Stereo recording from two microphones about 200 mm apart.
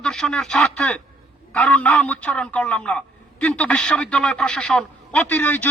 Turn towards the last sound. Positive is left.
turn(degrees=10)  # may be behind; listen again after turning